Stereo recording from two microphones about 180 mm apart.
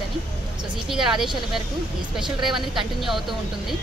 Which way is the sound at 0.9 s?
Centre (ahead or behind).